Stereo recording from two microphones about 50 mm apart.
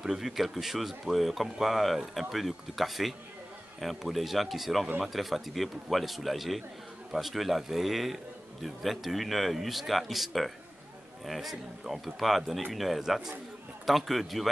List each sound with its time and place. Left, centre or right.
0.0 s speech: centre